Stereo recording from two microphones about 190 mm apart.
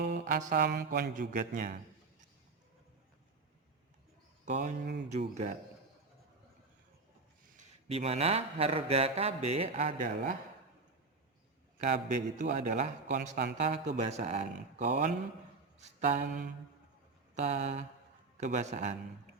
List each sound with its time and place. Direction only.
0.0 s mantra: 45° right (ahead or behind)
0.7 s speech: 50° right (ahead or behind)
4.4 s speech: 40° right (ahead or behind)
7.5 s speech: 35° right (ahead or behind)
12.0 s speech: 40° right (ahead or behind)